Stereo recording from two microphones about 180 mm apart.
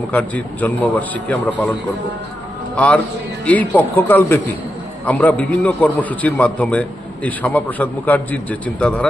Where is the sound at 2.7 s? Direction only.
5° left (ahead or behind).